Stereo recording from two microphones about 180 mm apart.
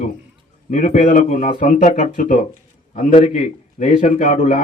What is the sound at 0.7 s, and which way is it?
A man's voice, 45° left (ahead or behind).